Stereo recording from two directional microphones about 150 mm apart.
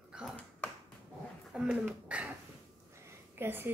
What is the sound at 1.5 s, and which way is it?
Speech, 5° right (ahead or behind).